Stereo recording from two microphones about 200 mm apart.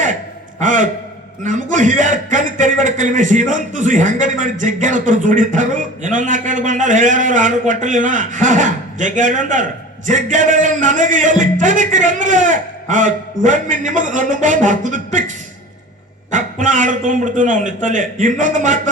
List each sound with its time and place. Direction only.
0.6 s a man's voice: 40° right (ahead or behind)
16.3 s a man's voice: 40° right (ahead or behind)